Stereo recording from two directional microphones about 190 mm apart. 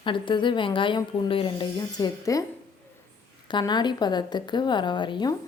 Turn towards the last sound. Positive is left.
turn(degrees=25)  # may be behind; listen again after turning